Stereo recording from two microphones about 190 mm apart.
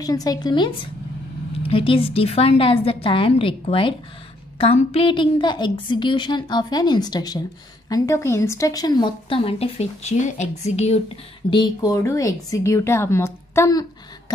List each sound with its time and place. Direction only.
0.0 s speech: 20° left (ahead or behind)